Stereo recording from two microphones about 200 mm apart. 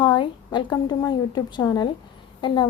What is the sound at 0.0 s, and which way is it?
A woman's voice, 25° left (ahead or behind).